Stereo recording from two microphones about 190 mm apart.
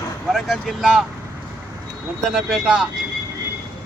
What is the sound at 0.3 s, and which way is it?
Speech, centre (ahead or behind).